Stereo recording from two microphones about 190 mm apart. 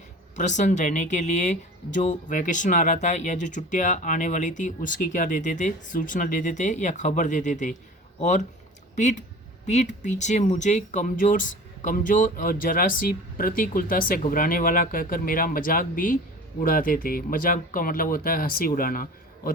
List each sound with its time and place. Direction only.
0.3 s speech: 40° left (ahead or behind)
9.0 s speech: 40° left (ahead or behind)